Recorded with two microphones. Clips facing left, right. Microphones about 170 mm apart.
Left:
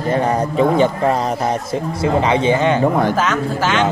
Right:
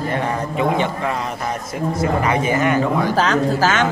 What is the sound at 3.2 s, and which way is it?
Speech, 35° right (ahead or behind).